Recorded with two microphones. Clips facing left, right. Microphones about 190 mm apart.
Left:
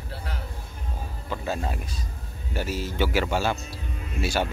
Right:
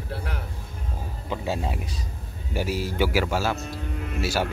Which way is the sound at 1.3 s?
10° right (ahead or behind).